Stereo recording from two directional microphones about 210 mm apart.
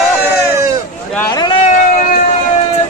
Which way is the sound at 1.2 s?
15° left (ahead or behind).